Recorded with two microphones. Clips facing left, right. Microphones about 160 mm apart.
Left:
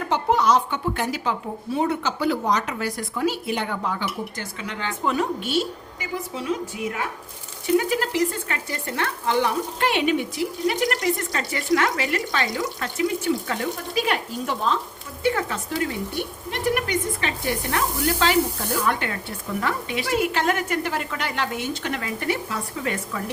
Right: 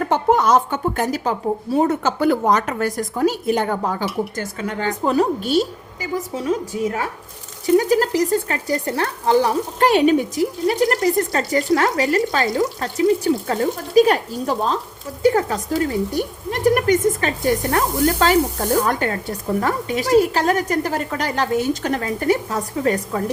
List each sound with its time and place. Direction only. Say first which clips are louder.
0.0 s a woman's voice: right 4 dB; 50° right (ahead or behind)